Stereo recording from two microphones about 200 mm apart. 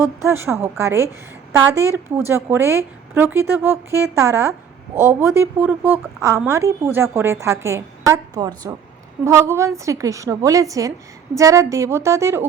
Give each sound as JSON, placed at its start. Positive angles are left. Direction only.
{"t": 0.0, "sound": "speech", "side_deg": -15}